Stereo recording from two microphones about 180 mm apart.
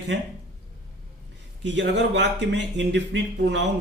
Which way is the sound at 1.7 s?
75° right (ahead or behind).